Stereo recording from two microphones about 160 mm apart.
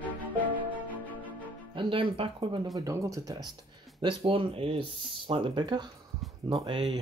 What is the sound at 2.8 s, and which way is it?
Speech, 20° right (ahead or behind).